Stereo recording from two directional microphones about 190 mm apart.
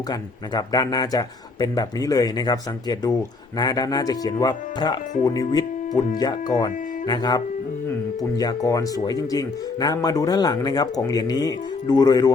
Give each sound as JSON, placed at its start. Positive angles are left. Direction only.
{"t": 0.1, "sound": "speech", "side_deg": 20}